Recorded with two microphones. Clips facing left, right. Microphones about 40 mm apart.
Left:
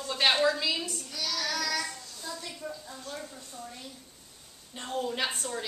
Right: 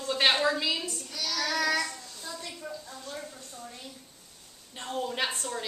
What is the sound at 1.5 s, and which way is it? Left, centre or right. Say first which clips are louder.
Child singing: right 7 dB; right.